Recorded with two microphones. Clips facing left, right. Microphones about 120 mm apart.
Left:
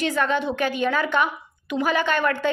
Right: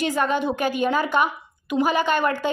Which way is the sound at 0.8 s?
25° right (ahead or behind).